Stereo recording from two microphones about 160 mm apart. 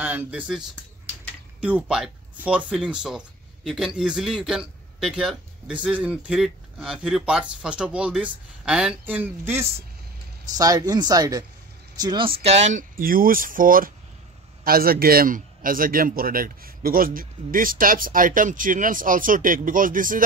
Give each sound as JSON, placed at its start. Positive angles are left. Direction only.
{"t": 0.0, "sound": "speech", "side_deg": -10}
{"t": 12.4, "sound": "a man's voice", "side_deg": -45}